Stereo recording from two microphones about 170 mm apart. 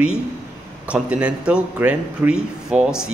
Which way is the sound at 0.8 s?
5° right (ahead or behind).